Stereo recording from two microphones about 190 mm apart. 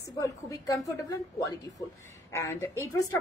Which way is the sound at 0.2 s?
15° left (ahead or behind).